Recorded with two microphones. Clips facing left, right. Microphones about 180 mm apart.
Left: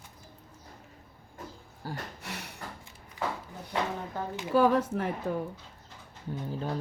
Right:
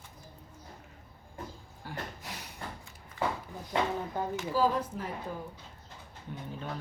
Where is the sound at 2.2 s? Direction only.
70° left (ahead or behind).